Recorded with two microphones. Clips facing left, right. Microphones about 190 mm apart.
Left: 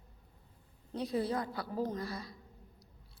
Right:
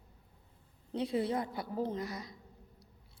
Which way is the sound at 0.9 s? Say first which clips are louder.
Right 1 dB; 25° right (ahead or behind).